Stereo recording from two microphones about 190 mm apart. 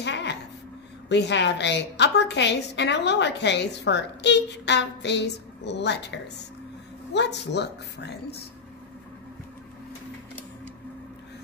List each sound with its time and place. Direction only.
0.0 s a sound: 65° left (ahead or behind)
1.0 s a woman's voice: 65° left (ahead or behind)
7.2 s a woman's voice: 65° left (ahead or behind)